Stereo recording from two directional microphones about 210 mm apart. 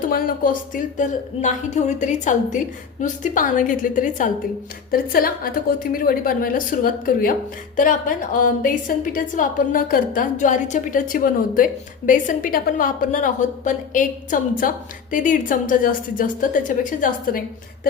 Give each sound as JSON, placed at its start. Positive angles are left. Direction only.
{"t": 0.1, "sound": "a woman's voice", "side_deg": 40}